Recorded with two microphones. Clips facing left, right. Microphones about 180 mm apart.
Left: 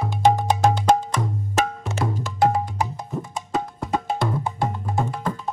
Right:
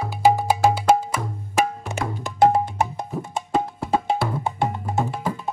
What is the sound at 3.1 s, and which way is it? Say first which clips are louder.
Music: right 2 dB; centre (ahead or behind).